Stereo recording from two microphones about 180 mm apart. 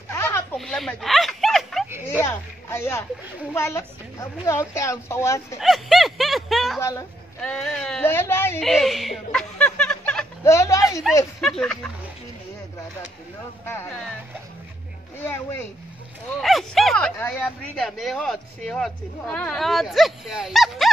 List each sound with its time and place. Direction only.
0.1 s a sound: 15° left (ahead or behind)
0.6 s a sound: centre (ahead or behind)
2.2 s a woman's voice: 15° left (ahead or behind)
5.6 s speech: centre (ahead or behind)
6.8 s a woman's voice: 20° left (ahead or behind)
7.4 s a woman's voice: 5° left (ahead or behind)
8.5 s a sound: centre (ahead or behind)
10.4 s a woman's voice: 15° left (ahead or behind)
11.1 s speech: centre (ahead or behind)
15.1 s a woman's voice: 15° left (ahead or behind)
16.3 s speech: centre (ahead or behind)